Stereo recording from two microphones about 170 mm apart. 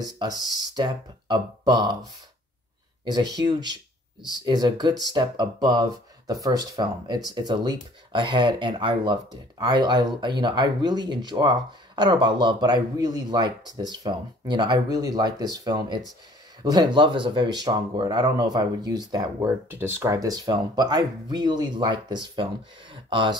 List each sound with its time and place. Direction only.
0.4 s speech: 25° right (ahead or behind)
3.1 s speech: 25° right (ahead or behind)
19.7 s speech: 15° right (ahead or behind); by 23.3 s 30° right (ahead or behind)